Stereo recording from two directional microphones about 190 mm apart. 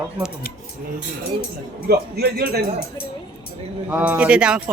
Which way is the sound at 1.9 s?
55° right (ahead or behind).